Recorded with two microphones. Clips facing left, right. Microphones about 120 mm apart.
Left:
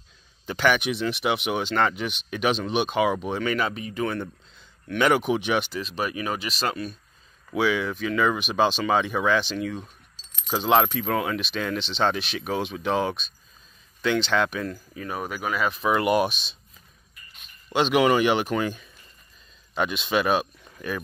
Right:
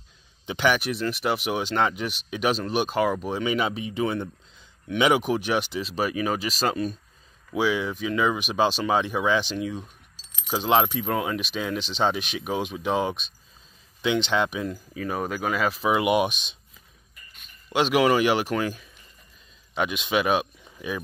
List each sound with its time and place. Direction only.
0.5 s speech: 15° right (ahead or behind)
0.7 s speech: centre (ahead or behind)
3.5 s speech: 20° right (ahead or behind); by 5.7 s 5° right (ahead or behind)
5.7 s speech: 30° right (ahead or behind)
7.5 s speech: 10° right (ahead or behind)
15.9 s speech: 10° right (ahead or behind)
17.6 s speech: 10° right (ahead or behind)